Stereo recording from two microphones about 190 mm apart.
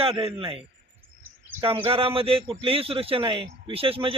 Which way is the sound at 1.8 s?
30° right (ahead or behind).